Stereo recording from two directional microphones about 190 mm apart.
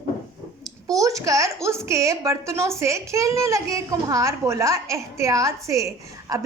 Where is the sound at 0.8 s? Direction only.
15° right (ahead or behind).